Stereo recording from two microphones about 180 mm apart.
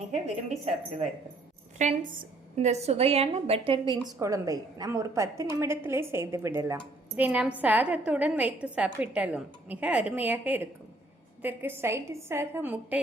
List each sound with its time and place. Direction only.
0.6 s a woman's voice: 35° right (ahead or behind)
4.2 s a woman's voice: 20° right (ahead or behind)